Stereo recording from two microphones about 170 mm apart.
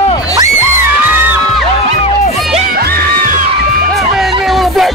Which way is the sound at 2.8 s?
60° right (ahead or behind).